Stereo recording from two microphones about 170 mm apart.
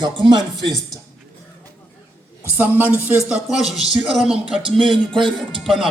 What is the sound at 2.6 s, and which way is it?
Speech, 10° right (ahead or behind).